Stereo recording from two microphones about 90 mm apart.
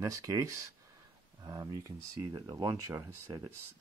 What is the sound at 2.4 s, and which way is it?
Speech, 50° right (ahead or behind).